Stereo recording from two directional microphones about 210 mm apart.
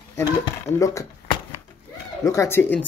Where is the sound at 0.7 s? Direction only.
30° left (ahead or behind).